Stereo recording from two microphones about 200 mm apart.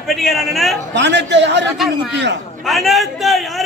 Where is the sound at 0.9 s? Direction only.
60° right (ahead or behind).